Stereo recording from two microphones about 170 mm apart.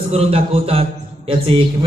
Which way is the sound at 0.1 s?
35° right (ahead or behind).